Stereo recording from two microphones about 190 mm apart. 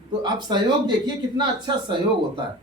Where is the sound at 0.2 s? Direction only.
25° right (ahead or behind).